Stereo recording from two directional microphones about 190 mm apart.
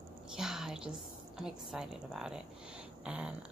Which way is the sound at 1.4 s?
Centre (ahead or behind).